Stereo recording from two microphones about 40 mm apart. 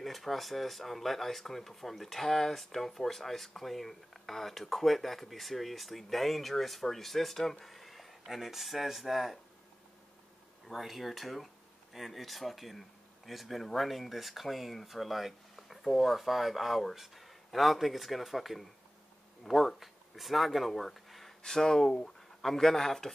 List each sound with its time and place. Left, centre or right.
0.0 s speech: centre
10.7 s speech: centre
21.4 s speech: centre